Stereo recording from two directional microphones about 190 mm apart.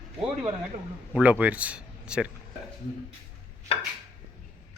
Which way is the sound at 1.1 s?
10° right (ahead or behind).